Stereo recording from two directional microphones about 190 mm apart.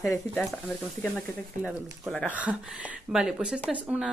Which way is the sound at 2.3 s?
5° right (ahead or behind).